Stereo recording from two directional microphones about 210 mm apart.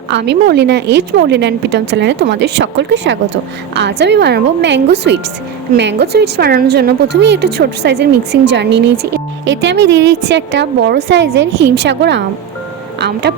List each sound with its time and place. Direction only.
0.1 s a woman's voice: 55° right (ahead or behind)